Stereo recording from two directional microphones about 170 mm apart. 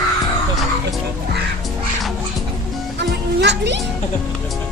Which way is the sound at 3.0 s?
90° right.